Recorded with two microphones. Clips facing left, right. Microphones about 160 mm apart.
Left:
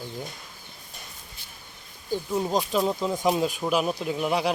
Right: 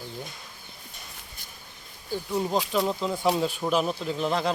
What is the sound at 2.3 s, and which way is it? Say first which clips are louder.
Speech: even; 15° left (ahead or behind).